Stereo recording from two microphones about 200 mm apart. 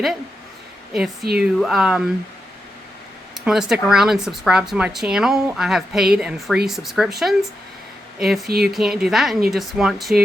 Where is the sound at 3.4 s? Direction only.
5° right (ahead or behind).